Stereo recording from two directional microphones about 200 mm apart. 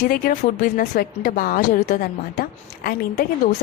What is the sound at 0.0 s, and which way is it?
Speech, 45° left (ahead or behind).